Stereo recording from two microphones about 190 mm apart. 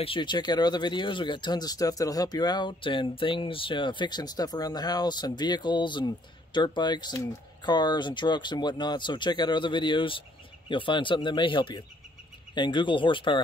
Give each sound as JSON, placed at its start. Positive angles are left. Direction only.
{"t": 0.0, "sound": "speech", "side_deg": 25}